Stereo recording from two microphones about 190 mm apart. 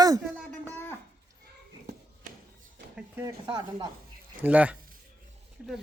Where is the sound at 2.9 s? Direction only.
10° right (ahead or behind).